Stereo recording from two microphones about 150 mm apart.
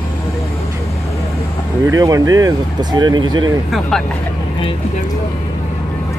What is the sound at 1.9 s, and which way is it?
Speech, 20° right (ahead or behind).